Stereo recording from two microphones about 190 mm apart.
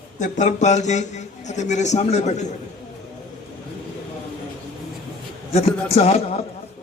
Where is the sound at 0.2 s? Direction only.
40° left (ahead or behind).